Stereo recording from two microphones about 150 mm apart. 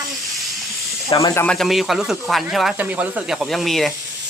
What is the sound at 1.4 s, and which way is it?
Speech, centre (ahead or behind).